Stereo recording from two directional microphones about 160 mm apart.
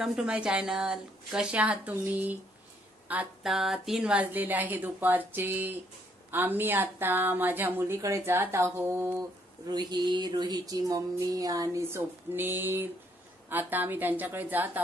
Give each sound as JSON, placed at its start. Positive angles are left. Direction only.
{"t": 0.0, "sound": "a woman's voice", "side_deg": -5}
{"t": 9.7, "sound": "a sound", "side_deg": -25}
{"t": 13.5, "sound": "a woman's voice", "side_deg": -10}